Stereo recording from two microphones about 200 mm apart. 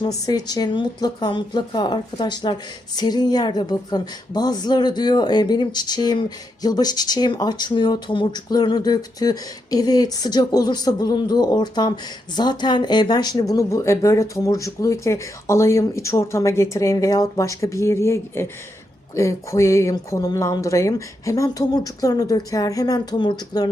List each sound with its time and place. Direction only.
0.0 s speech: 20° left (ahead or behind)